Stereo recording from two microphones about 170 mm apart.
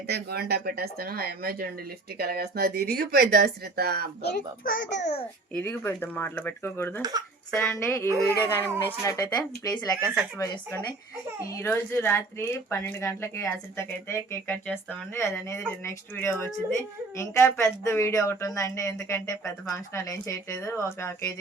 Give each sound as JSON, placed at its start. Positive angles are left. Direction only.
{"t": 0.1, "sound": "speech", "side_deg": -70}
{"t": 4.2, "sound": "a child's voice", "side_deg": 65}
{"t": 5.5, "sound": "speech", "side_deg": 10}
{"t": 7.0, "sound": "speech", "side_deg": -20}
{"t": 7.5, "sound": "speech", "side_deg": 15}